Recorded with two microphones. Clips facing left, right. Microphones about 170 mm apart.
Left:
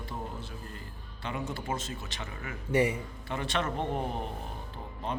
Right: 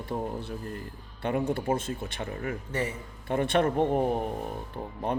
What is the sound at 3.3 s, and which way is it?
Speech, 50° right (ahead or behind).